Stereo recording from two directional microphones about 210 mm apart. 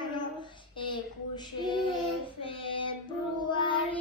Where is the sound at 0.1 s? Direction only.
20° left (ahead or behind).